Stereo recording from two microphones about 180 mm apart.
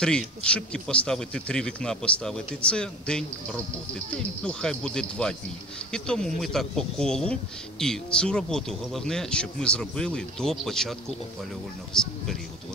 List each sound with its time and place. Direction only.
0.0 s speech: 5° left (ahead or behind)